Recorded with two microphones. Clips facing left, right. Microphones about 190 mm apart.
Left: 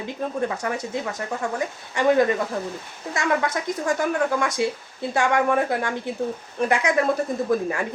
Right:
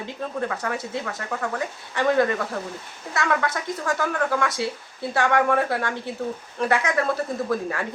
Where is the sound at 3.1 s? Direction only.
15° left (ahead or behind).